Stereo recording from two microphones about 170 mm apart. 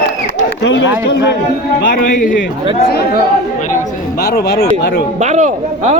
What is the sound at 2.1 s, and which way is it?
Speech, 50° left (ahead or behind).